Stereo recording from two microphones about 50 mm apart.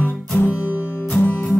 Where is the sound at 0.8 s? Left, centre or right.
Left.